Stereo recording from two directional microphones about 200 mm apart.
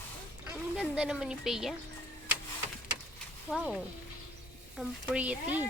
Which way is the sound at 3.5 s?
5° right (ahead or behind).